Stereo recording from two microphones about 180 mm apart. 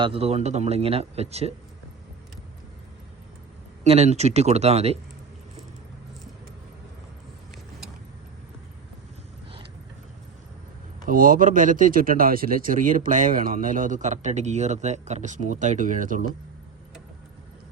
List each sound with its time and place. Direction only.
0.0 s a man's voice: 35° right (ahead or behind)
3.8 s a man's voice: 35° right (ahead or behind)
11.0 s speech: 50° right (ahead or behind)